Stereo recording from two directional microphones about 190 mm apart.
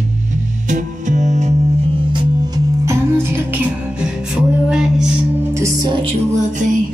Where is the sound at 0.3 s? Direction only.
40° right (ahead or behind); by 5.5 s 5° right (ahead or behind).